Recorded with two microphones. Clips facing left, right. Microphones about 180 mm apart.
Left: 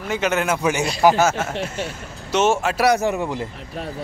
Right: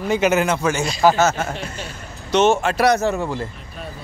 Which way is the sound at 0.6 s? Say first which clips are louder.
Even; 15° left (ahead or behind).